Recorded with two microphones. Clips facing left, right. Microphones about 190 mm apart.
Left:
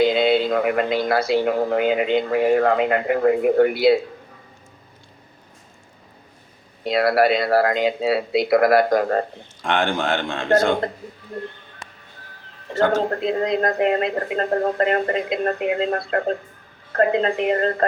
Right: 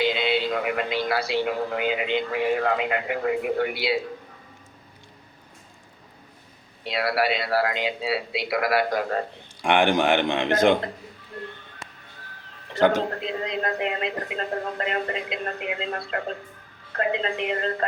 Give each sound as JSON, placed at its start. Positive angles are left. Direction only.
{"t": 0.0, "sound": "a man's voice", "side_deg": 40}
{"t": 6.8, "sound": "a man's voice", "side_deg": 50}
{"t": 9.6, "sound": "a man's voice", "side_deg": -15}
{"t": 13.1, "sound": "a man's voice", "side_deg": 40}